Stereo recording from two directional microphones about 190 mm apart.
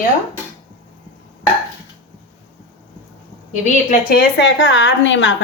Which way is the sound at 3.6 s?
50° left (ahead or behind).